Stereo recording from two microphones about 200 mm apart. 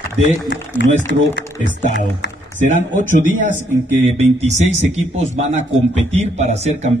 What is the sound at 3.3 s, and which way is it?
Speech, 40° right (ahead or behind).